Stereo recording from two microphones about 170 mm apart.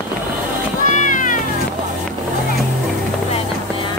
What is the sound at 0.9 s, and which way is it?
Music, 50° left (ahead or behind).